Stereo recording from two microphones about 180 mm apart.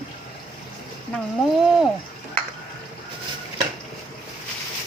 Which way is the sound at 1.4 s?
Centre (ahead or behind).